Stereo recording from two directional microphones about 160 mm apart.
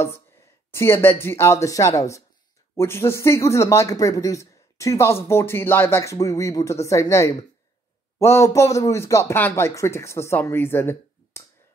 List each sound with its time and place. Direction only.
0.7 s speech: 15° left (ahead or behind)